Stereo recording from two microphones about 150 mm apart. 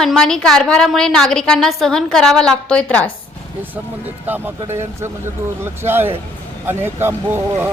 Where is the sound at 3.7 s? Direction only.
10° right (ahead or behind).